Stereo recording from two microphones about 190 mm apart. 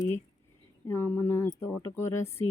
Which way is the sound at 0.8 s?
10° left (ahead or behind).